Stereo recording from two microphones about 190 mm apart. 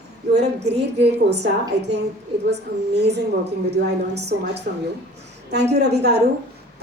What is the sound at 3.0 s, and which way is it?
Speech, 60° right (ahead or behind).